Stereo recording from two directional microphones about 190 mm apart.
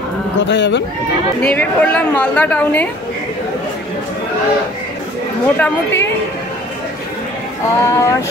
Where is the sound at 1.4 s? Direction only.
5° left (ahead or behind).